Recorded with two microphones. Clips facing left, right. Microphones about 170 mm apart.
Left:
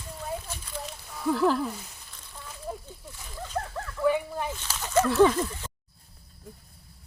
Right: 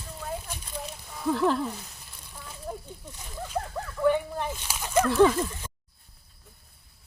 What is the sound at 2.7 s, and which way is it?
Snake, centre (ahead or behind).